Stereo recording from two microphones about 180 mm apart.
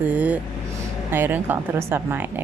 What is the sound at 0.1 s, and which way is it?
Vehicle, 10° right (ahead or behind).